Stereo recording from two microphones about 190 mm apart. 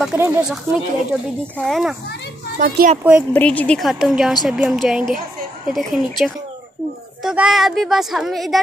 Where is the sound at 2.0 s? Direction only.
60° left (ahead or behind).